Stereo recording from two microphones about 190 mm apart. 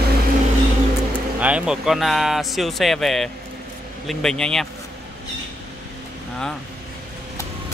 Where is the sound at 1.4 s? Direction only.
5° right (ahead or behind).